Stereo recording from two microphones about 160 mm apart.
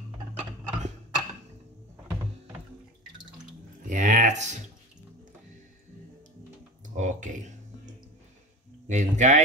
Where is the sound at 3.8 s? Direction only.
55° right (ahead or behind).